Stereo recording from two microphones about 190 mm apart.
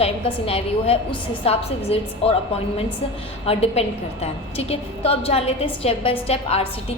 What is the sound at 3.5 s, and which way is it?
A woman's voice, 30° left (ahead or behind).